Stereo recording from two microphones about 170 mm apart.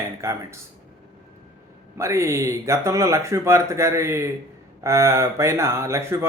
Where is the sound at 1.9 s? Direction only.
15° right (ahead or behind).